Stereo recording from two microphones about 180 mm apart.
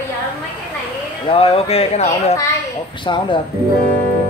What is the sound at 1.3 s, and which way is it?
A man's voice, 30° left (ahead or behind).